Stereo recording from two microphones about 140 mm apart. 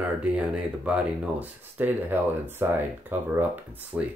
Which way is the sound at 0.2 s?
10° right (ahead or behind).